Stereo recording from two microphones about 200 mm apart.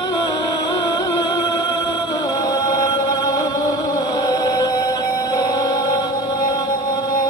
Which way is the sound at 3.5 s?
20° left (ahead or behind).